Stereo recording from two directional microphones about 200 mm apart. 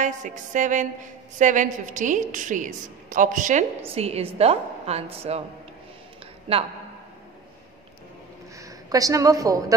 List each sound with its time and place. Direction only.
0.0 s a woman's voice: 40° right (ahead or behind)
6.5 s speech: 30° right (ahead or behind)
8.5 s a woman's voice: 15° right (ahead or behind)